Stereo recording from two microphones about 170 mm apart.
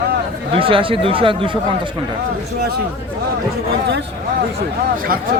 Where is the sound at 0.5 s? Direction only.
30° right (ahead or behind).